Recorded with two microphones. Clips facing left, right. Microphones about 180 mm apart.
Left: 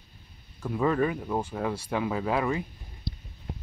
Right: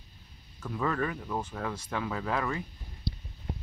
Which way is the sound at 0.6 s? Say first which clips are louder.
Left 6 dB; 15° left (ahead or behind).